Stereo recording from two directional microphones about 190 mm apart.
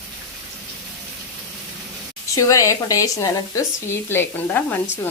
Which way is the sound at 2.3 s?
15° left (ahead or behind).